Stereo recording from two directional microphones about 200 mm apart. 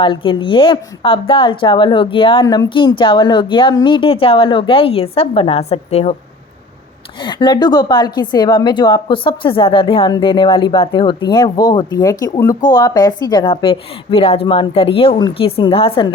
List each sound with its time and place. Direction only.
0.0 s a woman's voice: 25° left (ahead or behind)
7.3 s a woman's voice: 20° left (ahead or behind)